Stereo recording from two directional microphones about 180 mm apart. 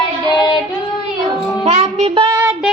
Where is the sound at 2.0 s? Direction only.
25° right (ahead or behind).